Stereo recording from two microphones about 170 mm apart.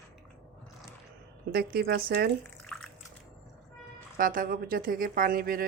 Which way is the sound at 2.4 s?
5° left (ahead or behind).